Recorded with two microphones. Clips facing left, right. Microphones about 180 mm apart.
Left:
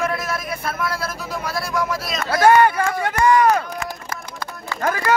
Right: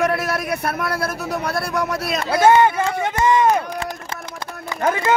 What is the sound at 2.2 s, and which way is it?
Speech, 20° right (ahead or behind).